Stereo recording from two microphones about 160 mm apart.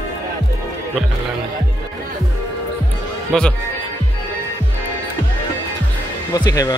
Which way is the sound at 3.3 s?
5° left (ahead or behind).